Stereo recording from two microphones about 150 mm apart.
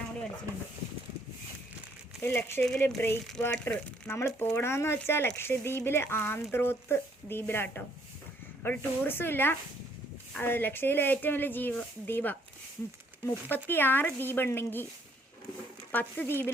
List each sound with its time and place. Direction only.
2.2 s speech: 15° left (ahead or behind)
13.5 s speech: 15° left (ahead or behind)
15.9 s speech: 10° left (ahead or behind)